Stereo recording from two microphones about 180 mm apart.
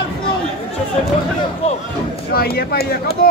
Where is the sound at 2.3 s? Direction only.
60° left (ahead or behind).